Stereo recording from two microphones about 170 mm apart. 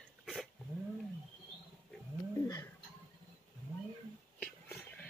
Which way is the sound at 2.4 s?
20° left (ahead or behind).